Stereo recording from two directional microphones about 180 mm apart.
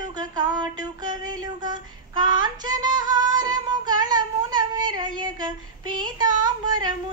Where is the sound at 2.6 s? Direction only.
25° right (ahead or behind).